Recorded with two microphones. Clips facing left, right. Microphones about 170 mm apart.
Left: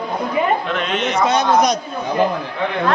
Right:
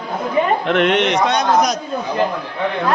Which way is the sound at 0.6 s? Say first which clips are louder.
Right 6 dB; 65° right (ahead or behind).